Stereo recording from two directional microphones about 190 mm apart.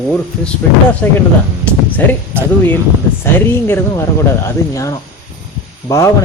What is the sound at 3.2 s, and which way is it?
Speech, 15° left (ahead or behind).